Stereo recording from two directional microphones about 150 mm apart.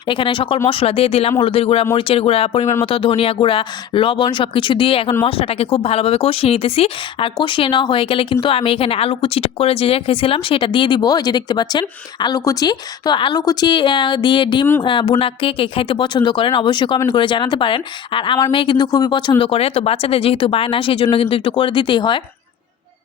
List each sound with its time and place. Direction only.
0.0 s speech: 35° left (ahead or behind)